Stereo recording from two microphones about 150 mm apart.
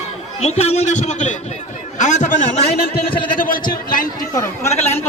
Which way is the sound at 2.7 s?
90° left.